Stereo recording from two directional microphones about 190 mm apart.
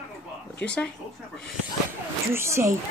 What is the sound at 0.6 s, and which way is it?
Speech, 5° left (ahead or behind).